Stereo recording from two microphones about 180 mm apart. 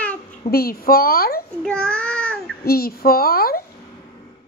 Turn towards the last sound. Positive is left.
turn(degrees=55)  # may be behind; listen again after turning